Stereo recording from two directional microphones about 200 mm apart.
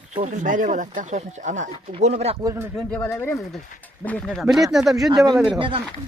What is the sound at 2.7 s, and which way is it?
Speech, 5° left (ahead or behind).